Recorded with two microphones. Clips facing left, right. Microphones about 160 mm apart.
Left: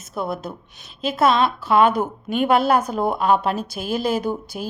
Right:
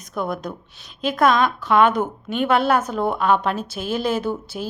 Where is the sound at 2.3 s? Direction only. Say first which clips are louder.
Left 1 dB; 40° left (ahead or behind).